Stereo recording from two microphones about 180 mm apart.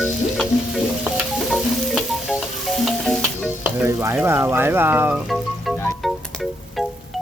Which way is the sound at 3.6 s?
10° right (ahead or behind).